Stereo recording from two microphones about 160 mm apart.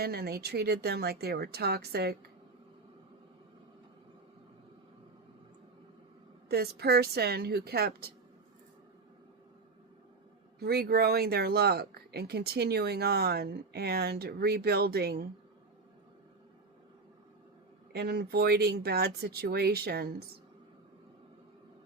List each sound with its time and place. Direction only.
0.0 s speech: 80° right
6.5 s speech: 80° right
10.6 s speech: 75° right (ahead or behind)
17.9 s speech: 80° right